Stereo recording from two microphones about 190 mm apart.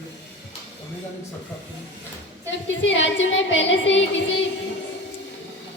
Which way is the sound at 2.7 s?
85° left.